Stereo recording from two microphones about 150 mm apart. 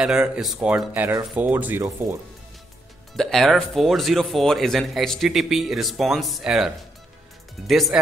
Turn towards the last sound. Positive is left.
turn(degrees=0)  # may be behind; listen again after turning